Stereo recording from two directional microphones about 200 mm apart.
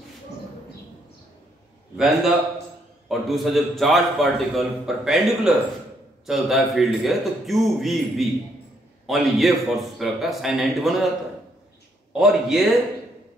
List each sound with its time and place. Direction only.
2.0 s a man's voice: centre (ahead or behind)
12.1 s a man's voice: centre (ahead or behind)